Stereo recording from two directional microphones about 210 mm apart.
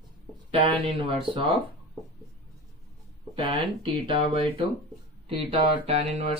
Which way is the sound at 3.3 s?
25° right (ahead or behind).